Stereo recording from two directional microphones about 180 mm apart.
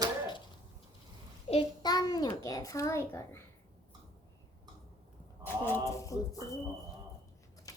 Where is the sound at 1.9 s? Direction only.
20° left (ahead or behind).